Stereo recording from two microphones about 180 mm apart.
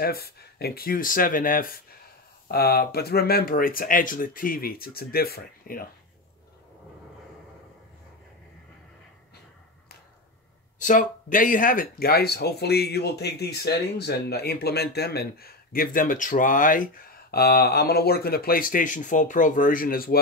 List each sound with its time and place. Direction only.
0.0 s speech: 60° left (ahead or behind)
10.8 s speech: 45° left (ahead or behind)